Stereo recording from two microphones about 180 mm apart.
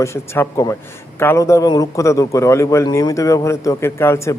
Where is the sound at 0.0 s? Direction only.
15° left (ahead or behind).